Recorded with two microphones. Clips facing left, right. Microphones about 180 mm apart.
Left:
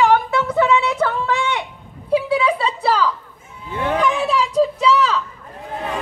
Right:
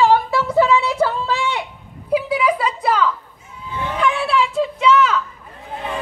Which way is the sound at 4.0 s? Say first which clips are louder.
Right 2 dB; 40° left (ahead or behind).